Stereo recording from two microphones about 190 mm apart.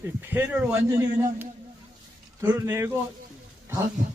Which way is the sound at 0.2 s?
10° right (ahead or behind).